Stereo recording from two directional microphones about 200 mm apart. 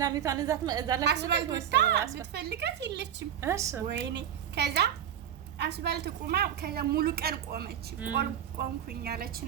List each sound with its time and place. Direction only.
0.0 s a woman's voice: 15° right (ahead or behind)
1.0 s a woman's voice: 60° right (ahead or behind)
3.4 s a woman's voice: 15° right (ahead or behind)
3.8 s a woman's voice: 60° right (ahead or behind)